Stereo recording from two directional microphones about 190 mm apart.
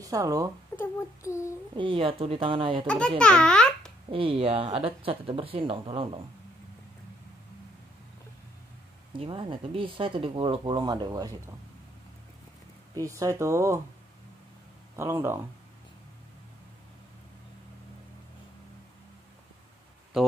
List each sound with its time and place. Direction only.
0.0 s speech: 20° right (ahead or behind)
0.7 s speech: 15° left (ahead or behind)
1.8 s speech: 25° right (ahead or behind)
3.2 s a child's voice: 5° left (ahead or behind)
4.1 s speech: 30° right (ahead or behind)
9.1 s speech: 25° right (ahead or behind)
12.9 s speech: 15° right (ahead or behind)
15.0 s speech: 15° right (ahead or behind)